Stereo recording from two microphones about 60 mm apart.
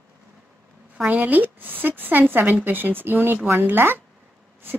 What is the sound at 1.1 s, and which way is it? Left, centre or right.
Speech, right.